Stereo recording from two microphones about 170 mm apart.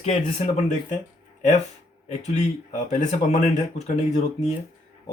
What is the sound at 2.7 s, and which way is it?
A man's voice, 45° left (ahead or behind).